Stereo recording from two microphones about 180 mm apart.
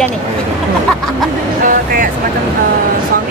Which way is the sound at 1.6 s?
50° right (ahead or behind).